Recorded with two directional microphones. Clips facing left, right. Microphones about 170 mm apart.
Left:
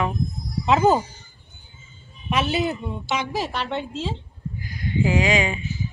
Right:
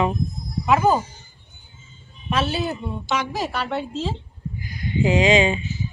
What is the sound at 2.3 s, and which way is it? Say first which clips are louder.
Speech: left 1 dB; 20° left (ahead or behind).